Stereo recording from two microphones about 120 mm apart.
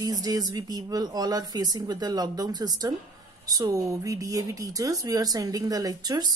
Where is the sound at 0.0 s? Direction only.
30° right (ahead or behind).